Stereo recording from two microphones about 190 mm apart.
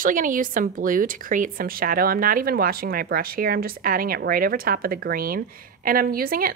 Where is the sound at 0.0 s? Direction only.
45° right (ahead or behind).